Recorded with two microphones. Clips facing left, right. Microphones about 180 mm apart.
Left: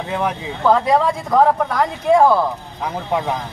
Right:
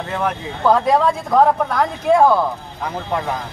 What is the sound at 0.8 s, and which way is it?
A man's voice, centre (ahead or behind).